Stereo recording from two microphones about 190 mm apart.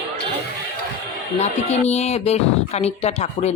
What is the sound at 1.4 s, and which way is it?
Speech, 35° left (ahead or behind).